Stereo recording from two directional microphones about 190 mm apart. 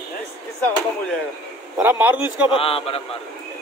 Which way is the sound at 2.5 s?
30° left (ahead or behind).